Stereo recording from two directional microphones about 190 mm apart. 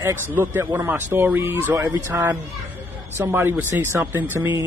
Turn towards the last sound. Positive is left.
turn(degrees=-10)  # may be behind; listen again after turning